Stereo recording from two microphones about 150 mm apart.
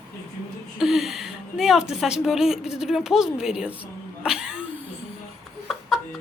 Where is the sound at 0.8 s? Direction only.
Centre (ahead or behind).